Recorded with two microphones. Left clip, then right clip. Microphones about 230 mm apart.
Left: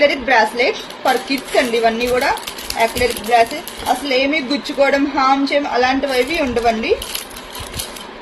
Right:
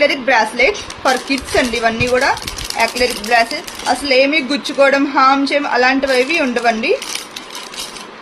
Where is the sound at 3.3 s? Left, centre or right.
Right.